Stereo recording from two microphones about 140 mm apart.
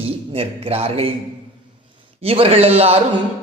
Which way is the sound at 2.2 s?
45° right (ahead or behind).